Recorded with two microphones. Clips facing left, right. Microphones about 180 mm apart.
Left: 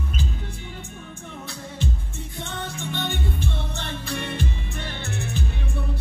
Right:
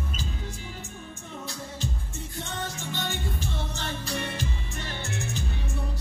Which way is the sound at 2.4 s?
60° left (ahead or behind).